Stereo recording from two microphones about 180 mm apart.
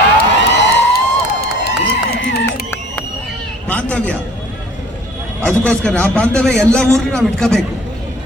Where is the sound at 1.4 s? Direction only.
60° left (ahead or behind).